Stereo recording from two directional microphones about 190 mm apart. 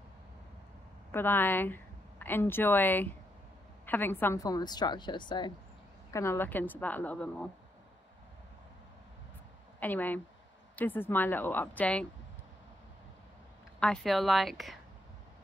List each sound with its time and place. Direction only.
1.1 s a woman's voice: 10° left (ahead or behind)
6.1 s a woman's voice: 10° left (ahead or behind)
9.8 s a woman's voice: 10° left (ahead or behind)
13.7 s speech: centre (ahead or behind)